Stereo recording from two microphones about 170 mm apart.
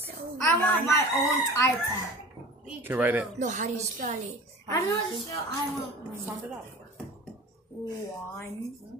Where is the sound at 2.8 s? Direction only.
10° right (ahead or behind).